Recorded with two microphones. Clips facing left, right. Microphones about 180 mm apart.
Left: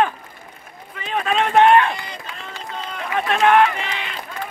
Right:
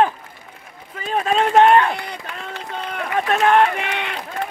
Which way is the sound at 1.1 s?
40° right (ahead or behind).